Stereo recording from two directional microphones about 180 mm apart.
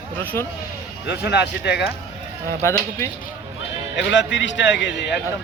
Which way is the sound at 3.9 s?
80° left.